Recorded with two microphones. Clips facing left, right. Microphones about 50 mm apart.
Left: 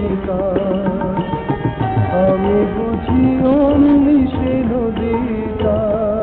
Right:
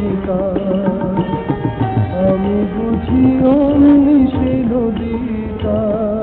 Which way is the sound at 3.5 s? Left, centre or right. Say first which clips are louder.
Right 1 dB; centre.